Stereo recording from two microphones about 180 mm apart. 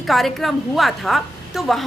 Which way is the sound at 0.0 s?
Centre (ahead or behind).